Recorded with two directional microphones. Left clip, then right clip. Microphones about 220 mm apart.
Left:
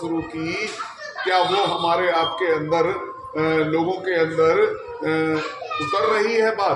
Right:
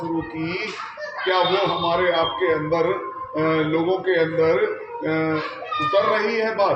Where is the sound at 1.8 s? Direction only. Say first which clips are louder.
Left 1 dB; 25° left (ahead or behind).